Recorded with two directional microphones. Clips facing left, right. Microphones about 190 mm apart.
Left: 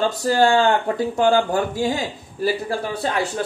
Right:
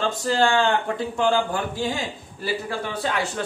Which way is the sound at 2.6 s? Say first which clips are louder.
Left 3 dB; 35° left (ahead or behind).